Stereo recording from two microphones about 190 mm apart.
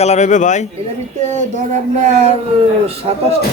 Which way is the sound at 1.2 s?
40° right (ahead or behind).